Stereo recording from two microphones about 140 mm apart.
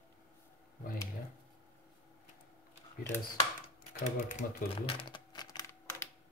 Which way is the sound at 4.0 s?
60° left (ahead or behind).